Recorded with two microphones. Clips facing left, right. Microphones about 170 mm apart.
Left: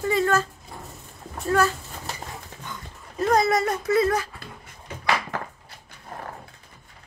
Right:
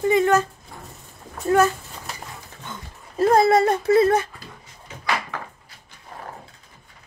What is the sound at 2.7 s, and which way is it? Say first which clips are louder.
Speech: right 3 dB; 30° right (ahead or behind).